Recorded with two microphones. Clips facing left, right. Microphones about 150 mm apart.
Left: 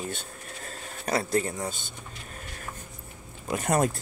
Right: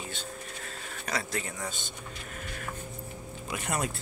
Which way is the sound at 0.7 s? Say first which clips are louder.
Left 8 dB; 35° left (ahead or behind).